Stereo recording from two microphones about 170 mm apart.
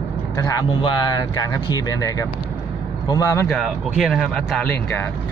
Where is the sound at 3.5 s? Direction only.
Centre (ahead or behind).